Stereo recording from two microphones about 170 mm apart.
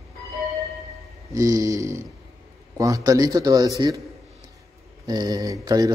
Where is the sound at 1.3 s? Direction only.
20° right (ahead or behind).